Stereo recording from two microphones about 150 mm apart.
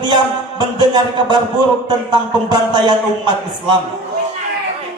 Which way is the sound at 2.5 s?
30° right (ahead or behind).